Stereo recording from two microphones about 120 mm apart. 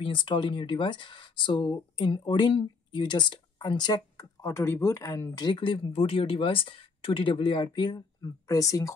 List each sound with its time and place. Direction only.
0.0 s speech: 45° left (ahead or behind)
5.9 s speech: 50° left (ahead or behind); by 8.9 s 30° left (ahead or behind)